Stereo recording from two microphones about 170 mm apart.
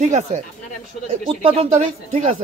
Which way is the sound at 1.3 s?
35° right (ahead or behind).